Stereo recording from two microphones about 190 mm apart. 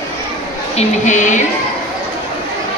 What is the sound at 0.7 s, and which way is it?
Speech, 40° left (ahead or behind).